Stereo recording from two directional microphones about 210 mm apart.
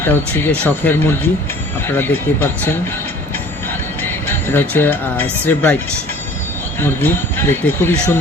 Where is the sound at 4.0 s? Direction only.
10° left (ahead or behind).